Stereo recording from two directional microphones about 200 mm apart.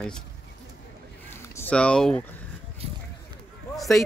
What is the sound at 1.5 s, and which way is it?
Speech, 10° left (ahead or behind).